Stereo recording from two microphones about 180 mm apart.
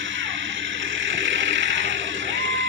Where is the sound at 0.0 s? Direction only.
90° right.